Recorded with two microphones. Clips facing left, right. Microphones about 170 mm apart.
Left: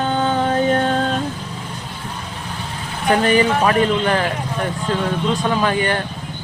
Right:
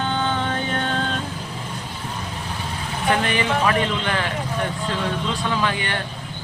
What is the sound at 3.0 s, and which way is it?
A man's voice, 40° left (ahead or behind).